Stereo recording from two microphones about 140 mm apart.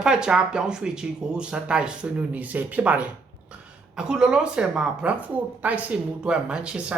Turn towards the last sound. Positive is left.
turn(degrees=-5)  # may be behind; listen again after turning